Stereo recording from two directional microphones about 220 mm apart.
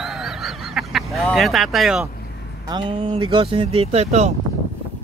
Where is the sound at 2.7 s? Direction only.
20° right (ahead or behind).